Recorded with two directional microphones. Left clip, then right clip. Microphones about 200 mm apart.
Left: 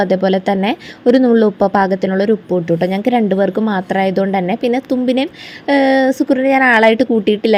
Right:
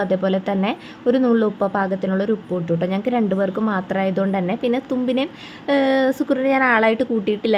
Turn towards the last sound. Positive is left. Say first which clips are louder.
# left 7 dB
turn(degrees=20)  # may be behind; listen again after turning